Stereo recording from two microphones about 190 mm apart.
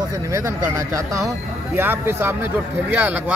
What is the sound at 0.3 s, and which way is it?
Speech, 15° right (ahead or behind).